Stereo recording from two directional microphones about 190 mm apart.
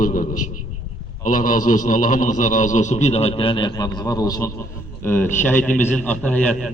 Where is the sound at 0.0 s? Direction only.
45° left (ahead or behind).